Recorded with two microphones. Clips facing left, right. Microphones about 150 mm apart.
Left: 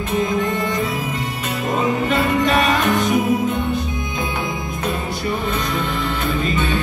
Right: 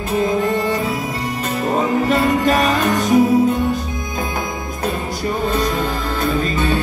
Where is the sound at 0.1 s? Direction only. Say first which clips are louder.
Right 3 dB; 35° right (ahead or behind).